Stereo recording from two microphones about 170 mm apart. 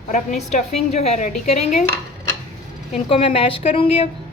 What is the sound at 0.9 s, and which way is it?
Speech, 40° left (ahead or behind).